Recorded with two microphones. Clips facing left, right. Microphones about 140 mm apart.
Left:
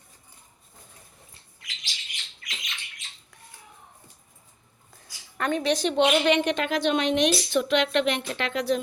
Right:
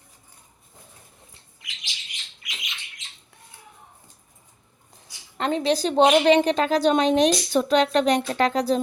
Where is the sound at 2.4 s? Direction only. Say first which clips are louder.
Even; centre (ahead or behind).